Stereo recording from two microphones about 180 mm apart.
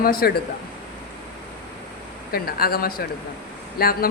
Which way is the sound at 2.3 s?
55° left (ahead or behind).